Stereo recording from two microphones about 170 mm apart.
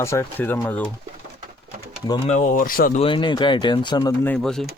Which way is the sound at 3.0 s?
30° left (ahead or behind).